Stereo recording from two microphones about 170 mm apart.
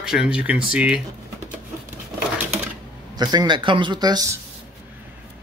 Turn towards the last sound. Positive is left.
turn(degrees=-25)  # may be behind; listen again after turning